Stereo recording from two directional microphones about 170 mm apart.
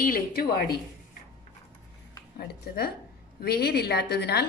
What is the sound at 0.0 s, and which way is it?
Speech, 60° left (ahead or behind).